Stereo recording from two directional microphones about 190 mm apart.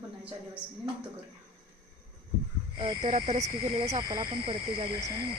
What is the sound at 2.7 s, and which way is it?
Speech, 25° right (ahead or behind).